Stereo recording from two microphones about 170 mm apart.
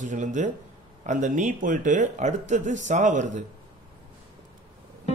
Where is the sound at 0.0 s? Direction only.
45° right (ahead or behind).